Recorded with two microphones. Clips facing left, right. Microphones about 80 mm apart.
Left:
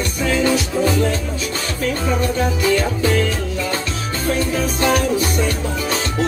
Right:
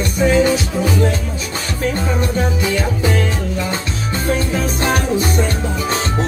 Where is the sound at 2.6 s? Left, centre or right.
Centre.